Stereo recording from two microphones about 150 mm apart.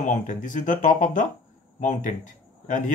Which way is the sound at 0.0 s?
55° left (ahead or behind).